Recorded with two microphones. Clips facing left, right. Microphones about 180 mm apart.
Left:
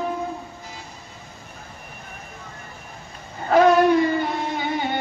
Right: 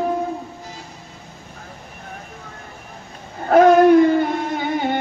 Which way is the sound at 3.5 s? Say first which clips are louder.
Right 5 dB; 50° right (ahead or behind).